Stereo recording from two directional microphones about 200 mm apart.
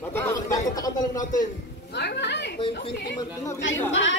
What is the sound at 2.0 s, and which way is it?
Speech, 60° left (ahead or behind).